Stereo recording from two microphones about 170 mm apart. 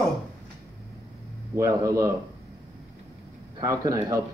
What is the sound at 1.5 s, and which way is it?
Speech, 15° right (ahead or behind).